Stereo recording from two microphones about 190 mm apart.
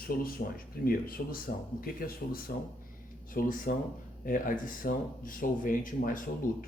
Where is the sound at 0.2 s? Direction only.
50° left (ahead or behind).